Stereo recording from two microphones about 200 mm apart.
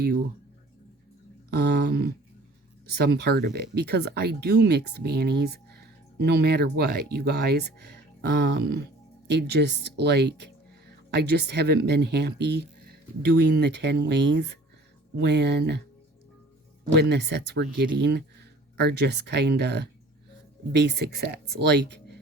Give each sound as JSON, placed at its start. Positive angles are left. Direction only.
{"t": 1.5, "sound": "speech", "side_deg": -55}
{"t": 16.9, "sound": "speech", "side_deg": -55}